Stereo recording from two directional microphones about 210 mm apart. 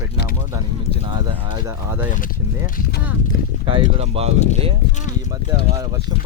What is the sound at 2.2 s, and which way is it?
Speech, 45° left (ahead or behind).